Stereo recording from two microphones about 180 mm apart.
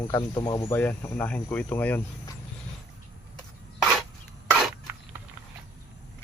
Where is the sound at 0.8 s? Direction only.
10° left (ahead or behind).